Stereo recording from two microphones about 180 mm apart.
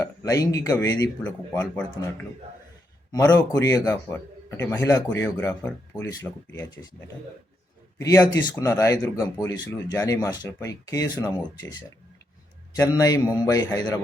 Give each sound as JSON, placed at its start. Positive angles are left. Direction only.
{"t": 0.0, "sound": "speech", "side_deg": 20}
{"t": 1.2, "sound": "a man's voice", "side_deg": 10}
{"t": 3.1, "sound": "a man's voice", "side_deg": 20}
{"t": 7.9, "sound": "speech", "side_deg": 20}